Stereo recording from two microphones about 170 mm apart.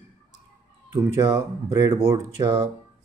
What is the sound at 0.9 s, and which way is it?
Speech, 20° right (ahead or behind).